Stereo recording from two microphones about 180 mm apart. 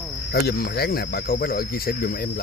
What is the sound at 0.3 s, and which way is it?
Speech, 60° left (ahead or behind).